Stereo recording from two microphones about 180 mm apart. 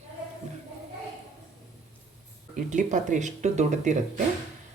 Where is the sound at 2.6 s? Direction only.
45° right (ahead or behind).